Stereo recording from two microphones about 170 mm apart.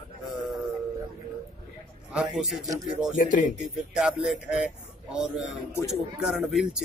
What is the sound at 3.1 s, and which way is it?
Speech, 50° left (ahead or behind).